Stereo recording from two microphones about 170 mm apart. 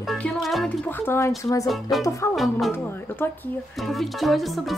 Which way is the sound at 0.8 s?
15° left (ahead or behind).